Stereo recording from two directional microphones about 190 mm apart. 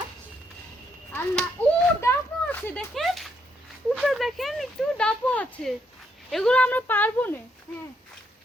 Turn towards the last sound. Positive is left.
turn(degrees=10)  # may be behind; listen again after turning